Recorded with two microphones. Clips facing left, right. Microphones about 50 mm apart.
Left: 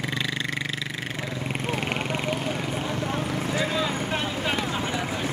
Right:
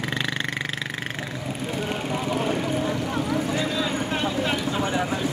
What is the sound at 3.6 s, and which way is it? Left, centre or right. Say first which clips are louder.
Vehicle: even; left.